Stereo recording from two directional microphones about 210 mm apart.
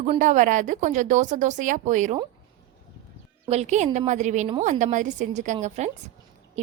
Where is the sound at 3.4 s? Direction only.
30° right (ahead or behind).